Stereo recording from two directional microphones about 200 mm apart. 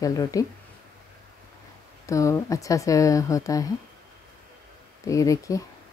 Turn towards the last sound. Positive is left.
turn(degrees=15)  # may be behind; listen again after turning